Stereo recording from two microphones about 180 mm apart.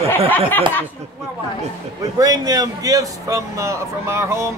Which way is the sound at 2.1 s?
20° right (ahead or behind).